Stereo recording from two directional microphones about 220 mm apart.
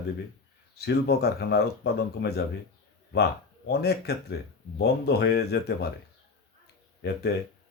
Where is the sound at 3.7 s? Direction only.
45° left (ahead or behind).